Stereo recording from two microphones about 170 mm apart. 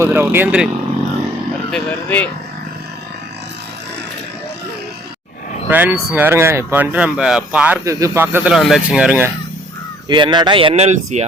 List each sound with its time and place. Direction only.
0.0 s speech: 10° right (ahead or behind)
1.7 s speech: 10° left (ahead or behind)
5.6 s speech: 10° right (ahead or behind)
7.9 s speech: 20° right (ahead or behind)
10.1 s speech: 25° right (ahead or behind); by 11.3 s 40° right (ahead or behind)